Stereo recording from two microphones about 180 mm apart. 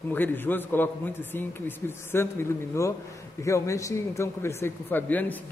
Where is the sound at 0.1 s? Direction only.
10° left (ahead or behind).